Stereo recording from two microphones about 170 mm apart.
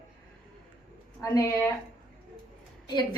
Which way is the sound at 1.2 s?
15° left (ahead or behind).